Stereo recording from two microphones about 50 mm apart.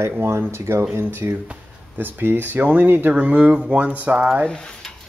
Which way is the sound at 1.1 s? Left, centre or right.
Right.